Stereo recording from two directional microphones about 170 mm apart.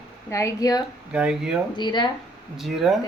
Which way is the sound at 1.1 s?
5° right (ahead or behind).